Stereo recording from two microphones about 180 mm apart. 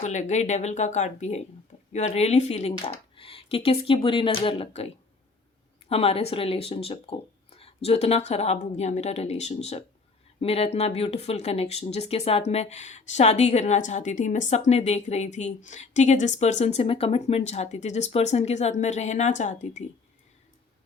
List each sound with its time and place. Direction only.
0.0 s speech: 40° left (ahead or behind)
5.9 s speech: 35° left (ahead or behind)